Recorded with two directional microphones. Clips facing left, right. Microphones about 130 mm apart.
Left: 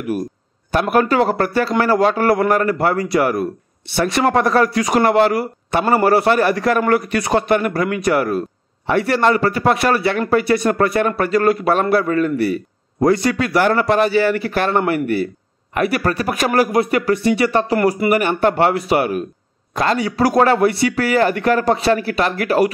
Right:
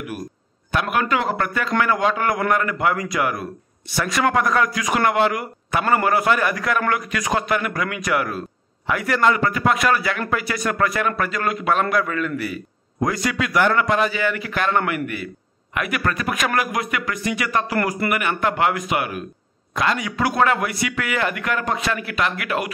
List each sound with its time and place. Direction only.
0.7 s speech: 35° left (ahead or behind)